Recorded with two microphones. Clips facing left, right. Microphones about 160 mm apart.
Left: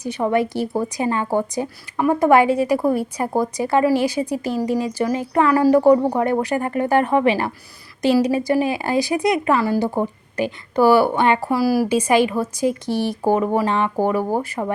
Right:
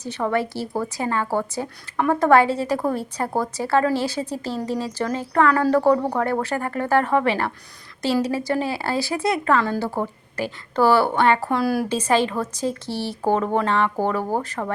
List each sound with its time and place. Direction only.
0.0 s a woman's voice: 15° left (ahead or behind)